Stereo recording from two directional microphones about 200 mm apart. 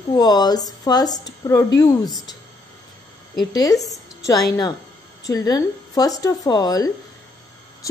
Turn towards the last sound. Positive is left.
turn(degrees=20)  # may be behind; listen again after turning